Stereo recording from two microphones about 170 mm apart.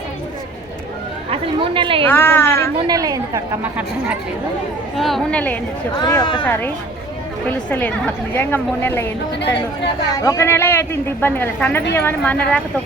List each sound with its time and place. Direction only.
1.3 s a woman's voice: 30° right (ahead or behind)
2.0 s a woman's voice: 10° left (ahead or behind)
2.7 s a woman's voice: 20° right (ahead or behind)
4.9 s a woman's voice: centre (ahead or behind)
6.0 s speech: 25° left (ahead or behind)
6.4 s a woman's voice: 10° left (ahead or behind)
9.4 s speech: 90° left
10.1 s a woman's voice: 20° left (ahead or behind)